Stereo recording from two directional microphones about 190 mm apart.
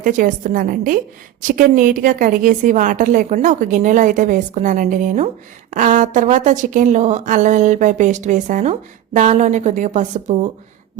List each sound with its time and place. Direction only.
0.0 s a woman's voice: 45° right (ahead or behind)